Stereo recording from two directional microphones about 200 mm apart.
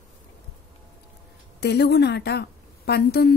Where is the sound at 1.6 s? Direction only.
55° left (ahead or behind).